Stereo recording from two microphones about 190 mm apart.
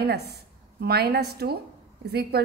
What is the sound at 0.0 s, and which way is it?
A woman's voice, 55° right (ahead or behind).